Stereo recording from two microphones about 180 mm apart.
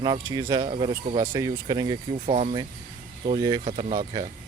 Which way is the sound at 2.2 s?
35° right (ahead or behind).